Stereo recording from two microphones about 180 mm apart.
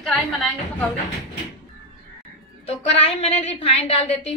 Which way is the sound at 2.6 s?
35° left (ahead or behind).